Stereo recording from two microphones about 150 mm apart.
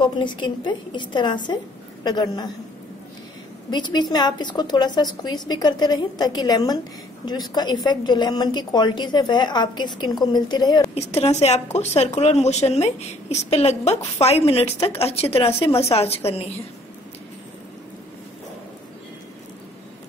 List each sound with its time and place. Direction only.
0.0 s a woman's voice: 30° left (ahead or behind)
3.7 s a woman's voice: 30° left (ahead or behind)
11.0 s a woman's voice: 45° left (ahead or behind)